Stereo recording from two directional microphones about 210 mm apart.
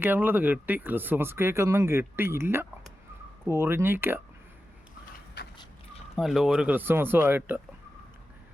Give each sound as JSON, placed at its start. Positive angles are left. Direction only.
{"t": 0.0, "sound": "speech", "side_deg": -10}
{"t": 5.4, "sound": "vehicle", "side_deg": 55}
{"t": 6.1, "sound": "speech", "side_deg": 0}